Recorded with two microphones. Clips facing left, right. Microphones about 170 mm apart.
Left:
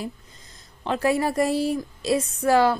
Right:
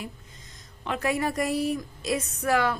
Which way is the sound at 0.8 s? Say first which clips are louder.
Left 5 dB; 30° left (ahead or behind).